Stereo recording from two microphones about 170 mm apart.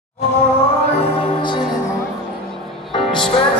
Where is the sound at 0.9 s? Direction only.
35° left (ahead or behind).